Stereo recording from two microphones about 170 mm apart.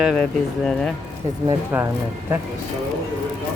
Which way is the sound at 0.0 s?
Centre (ahead or behind).